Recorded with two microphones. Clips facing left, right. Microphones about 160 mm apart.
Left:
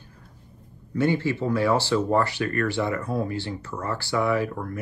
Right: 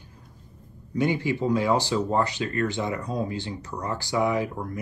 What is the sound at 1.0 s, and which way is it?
Speech, 15° right (ahead or behind).